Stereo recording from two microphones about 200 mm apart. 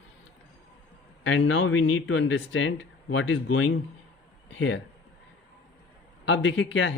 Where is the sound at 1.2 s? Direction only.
70° left (ahead or behind).